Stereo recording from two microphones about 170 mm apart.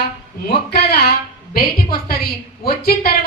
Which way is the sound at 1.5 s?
60° left (ahead or behind).